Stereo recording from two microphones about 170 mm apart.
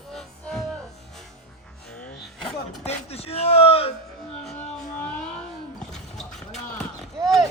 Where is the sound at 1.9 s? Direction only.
5° left (ahead or behind).